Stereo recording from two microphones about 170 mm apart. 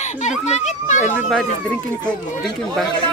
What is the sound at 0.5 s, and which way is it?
Speech, 45° left (ahead or behind).